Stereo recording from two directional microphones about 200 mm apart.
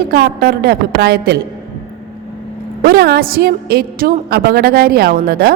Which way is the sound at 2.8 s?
50° right (ahead or behind).